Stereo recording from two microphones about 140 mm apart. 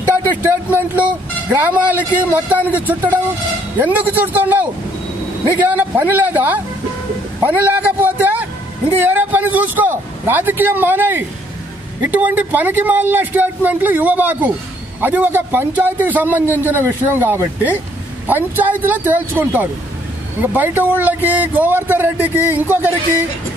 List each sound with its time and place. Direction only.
0.1 s speech: 15° right (ahead or behind)
7.4 s vehicle: 15° right (ahead or behind)
9.0 s speech: 15° right (ahead or behind)